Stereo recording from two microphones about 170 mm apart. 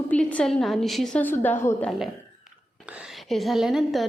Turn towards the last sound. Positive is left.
turn(degrees=0)  # may be behind; listen again after turning